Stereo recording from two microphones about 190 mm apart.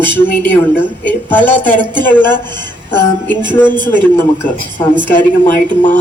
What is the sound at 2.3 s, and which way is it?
Speech, 25° right (ahead or behind).